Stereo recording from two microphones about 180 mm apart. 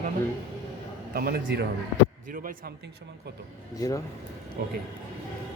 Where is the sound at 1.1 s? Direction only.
60° right (ahead or behind).